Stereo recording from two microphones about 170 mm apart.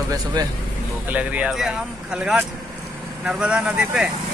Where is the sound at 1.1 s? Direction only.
10° right (ahead or behind).